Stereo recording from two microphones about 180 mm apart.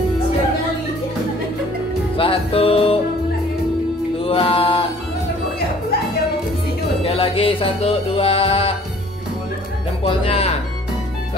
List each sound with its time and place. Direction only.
2.1 s music: 30° left (ahead or behind)
4.2 s mantra: 30° left (ahead or behind)
7.0 s music: 30° left (ahead or behind)
10.0 s speech: 30° left (ahead or behind)